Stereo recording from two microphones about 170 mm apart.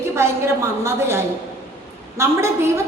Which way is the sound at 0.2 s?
15° right (ahead or behind).